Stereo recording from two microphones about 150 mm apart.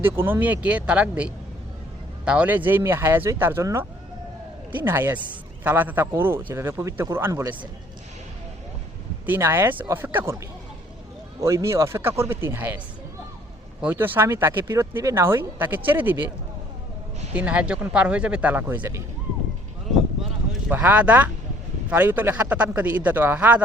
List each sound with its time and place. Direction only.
0.0 s speech: 15° right (ahead or behind)
9.2 s speech: 15° right (ahead or behind)
11.3 s speech: 20° right (ahead or behind)
13.8 s speech: 15° right (ahead or behind)
17.3 s speech: 10° right (ahead or behind)
20.2 s clip-clop: 5° right (ahead or behind)
21.8 s speech: 10° right (ahead or behind)